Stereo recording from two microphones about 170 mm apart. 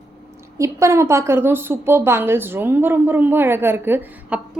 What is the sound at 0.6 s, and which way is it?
A woman's voice, 20° right (ahead or behind).